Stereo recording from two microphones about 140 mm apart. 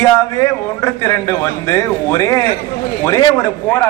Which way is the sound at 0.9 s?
25° left (ahead or behind).